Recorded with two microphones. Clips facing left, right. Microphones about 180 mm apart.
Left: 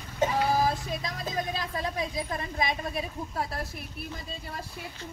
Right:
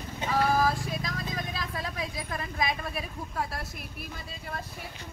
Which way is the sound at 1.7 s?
25° left (ahead or behind).